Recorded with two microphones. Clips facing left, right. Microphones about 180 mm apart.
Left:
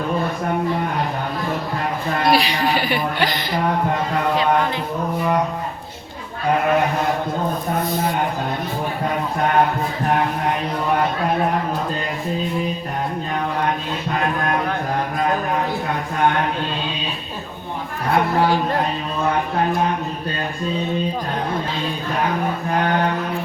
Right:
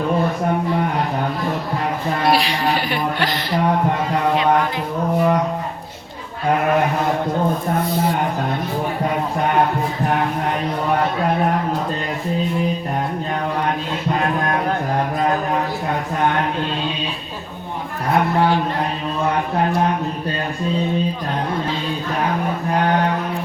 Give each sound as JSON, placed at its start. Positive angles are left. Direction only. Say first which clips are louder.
{"t": 2.3, "sound": "speech", "louder": "left 2 dB", "side_deg": 0}
{"t": 18.3, "sound": "speech", "louder": "right 1 dB", "side_deg": 40}